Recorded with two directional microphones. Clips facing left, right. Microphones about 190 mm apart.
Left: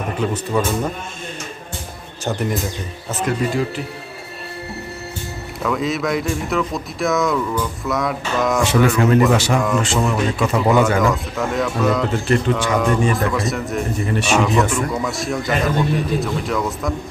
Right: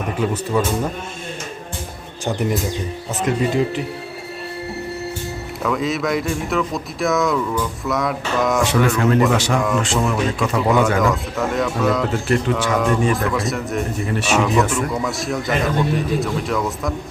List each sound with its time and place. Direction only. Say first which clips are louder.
0.5 s a man's voice: even; 5° right (ahead or behind)
5.6 s speech: even; centre (ahead or behind)